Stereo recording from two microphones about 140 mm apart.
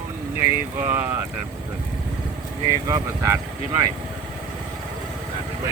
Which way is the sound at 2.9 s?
20° right (ahead or behind).